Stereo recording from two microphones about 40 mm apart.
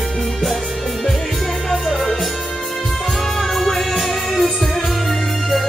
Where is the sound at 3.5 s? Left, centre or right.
Centre.